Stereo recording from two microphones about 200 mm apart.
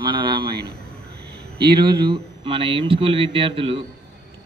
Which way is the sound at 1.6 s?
25° right (ahead or behind).